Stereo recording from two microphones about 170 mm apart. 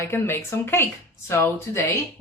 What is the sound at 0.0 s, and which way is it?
Speech, 15° left (ahead or behind).